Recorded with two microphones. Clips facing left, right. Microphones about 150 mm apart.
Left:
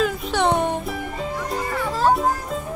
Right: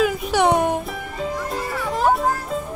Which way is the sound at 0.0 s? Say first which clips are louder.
Right 3 dB; 10° right (ahead or behind).